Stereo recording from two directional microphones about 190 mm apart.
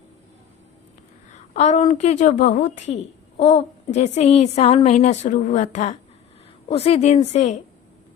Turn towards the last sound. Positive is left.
turn(degrees=35)  # may be behind; listen again after turning